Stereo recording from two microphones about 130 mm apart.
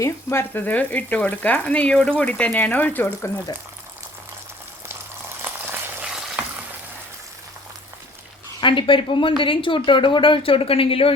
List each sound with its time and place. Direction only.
0.0 s speech: 20° left (ahead or behind)
5.4 s a sound: 15° right (ahead or behind)
6.1 s frying: 5° right (ahead or behind)
8.6 s speech: 40° left (ahead or behind)